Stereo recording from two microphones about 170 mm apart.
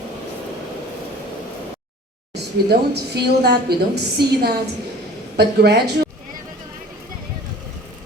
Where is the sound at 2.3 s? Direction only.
75° right (ahead or behind).